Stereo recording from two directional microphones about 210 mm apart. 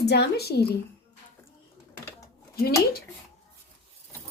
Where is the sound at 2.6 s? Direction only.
50° left (ahead or behind).